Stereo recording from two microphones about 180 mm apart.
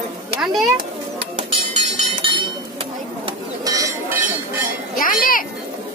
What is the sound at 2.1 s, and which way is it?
Chink, 30° right (ahead or behind).